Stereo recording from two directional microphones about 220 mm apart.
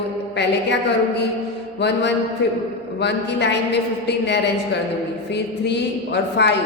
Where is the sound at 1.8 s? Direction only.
50° left (ahead or behind).